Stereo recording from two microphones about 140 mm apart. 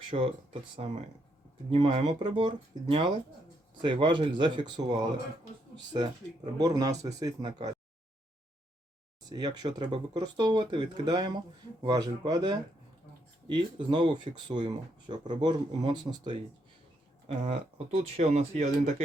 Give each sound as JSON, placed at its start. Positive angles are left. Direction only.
{"t": 0.1, "sound": "speech", "side_deg": -50}
{"t": 9.3, "sound": "speech", "side_deg": -30}
{"t": 17.4, "sound": "speech", "side_deg": -50}